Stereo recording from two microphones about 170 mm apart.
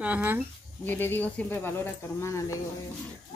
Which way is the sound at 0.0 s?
10° right (ahead or behind).